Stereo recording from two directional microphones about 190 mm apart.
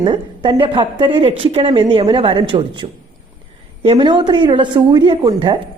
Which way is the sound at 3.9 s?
25° right (ahead or behind).